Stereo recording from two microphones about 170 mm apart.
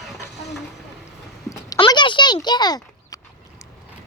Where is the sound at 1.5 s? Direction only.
25° left (ahead or behind).